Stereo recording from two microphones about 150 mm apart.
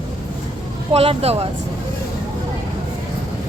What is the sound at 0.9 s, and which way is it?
Speech, 40° right (ahead or behind).